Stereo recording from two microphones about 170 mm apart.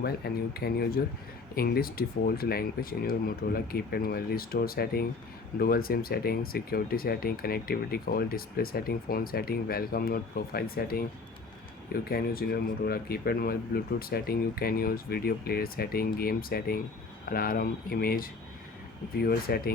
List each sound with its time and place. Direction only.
0.5 s speech: 65° left (ahead or behind)
12.0 s speech: 60° left (ahead or behind)